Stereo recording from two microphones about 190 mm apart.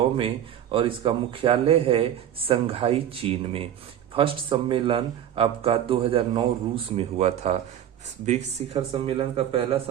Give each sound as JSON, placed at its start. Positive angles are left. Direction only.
{"t": 0.2, "sound": "speech", "side_deg": -30}
{"t": 8.9, "sound": "speech", "side_deg": -25}